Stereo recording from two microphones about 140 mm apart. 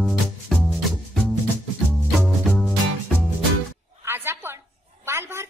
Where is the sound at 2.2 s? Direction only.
Centre (ahead or behind).